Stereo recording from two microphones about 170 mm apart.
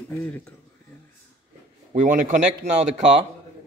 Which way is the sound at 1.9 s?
50° right (ahead or behind).